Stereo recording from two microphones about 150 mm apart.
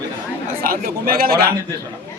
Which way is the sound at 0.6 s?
75° right (ahead or behind).